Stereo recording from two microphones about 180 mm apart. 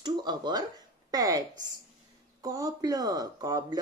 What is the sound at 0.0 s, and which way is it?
A woman's voice, 25° right (ahead or behind).